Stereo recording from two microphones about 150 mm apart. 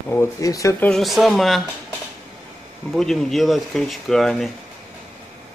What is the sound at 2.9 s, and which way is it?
A man's voice, centre (ahead or behind).